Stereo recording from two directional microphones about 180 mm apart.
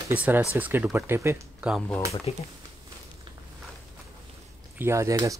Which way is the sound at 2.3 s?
35° left (ahead or behind).